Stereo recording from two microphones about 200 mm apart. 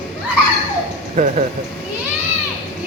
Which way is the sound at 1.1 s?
35° right (ahead or behind).